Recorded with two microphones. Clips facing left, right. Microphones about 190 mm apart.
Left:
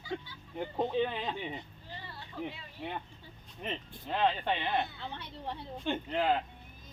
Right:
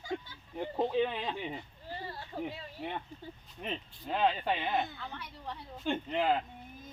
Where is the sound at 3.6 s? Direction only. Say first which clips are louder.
Left 1 dB; centre (ahead or behind).